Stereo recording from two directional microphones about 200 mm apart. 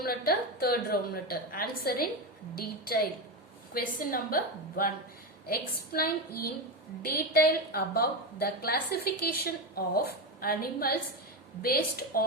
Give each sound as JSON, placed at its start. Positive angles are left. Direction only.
{"t": 0.0, "sound": "a woman's voice", "side_deg": 50}